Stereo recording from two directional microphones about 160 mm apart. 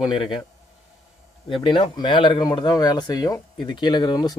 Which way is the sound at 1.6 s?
30° left (ahead or behind).